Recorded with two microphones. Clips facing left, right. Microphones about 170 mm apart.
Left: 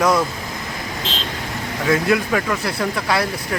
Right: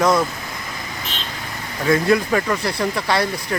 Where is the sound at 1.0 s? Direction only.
90° left.